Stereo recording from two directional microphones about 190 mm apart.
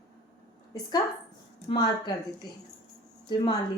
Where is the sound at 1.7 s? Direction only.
20° left (ahead or behind).